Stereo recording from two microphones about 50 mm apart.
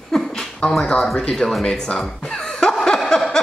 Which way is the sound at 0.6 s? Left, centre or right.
Left.